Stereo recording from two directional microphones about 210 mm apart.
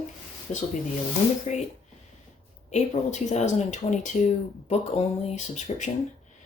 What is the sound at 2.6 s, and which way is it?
Speech, 35° left (ahead or behind).